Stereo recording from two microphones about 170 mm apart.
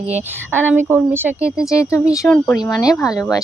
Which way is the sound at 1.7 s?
20° left (ahead or behind).